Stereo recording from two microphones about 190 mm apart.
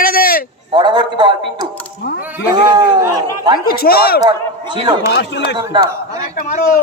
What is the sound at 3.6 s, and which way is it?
Speech, 55° left (ahead or behind).